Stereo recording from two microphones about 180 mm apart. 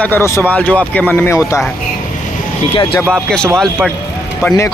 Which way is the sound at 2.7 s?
25° left (ahead or behind).